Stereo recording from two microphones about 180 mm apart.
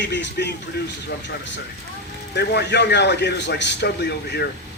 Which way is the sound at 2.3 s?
70° left (ahead or behind).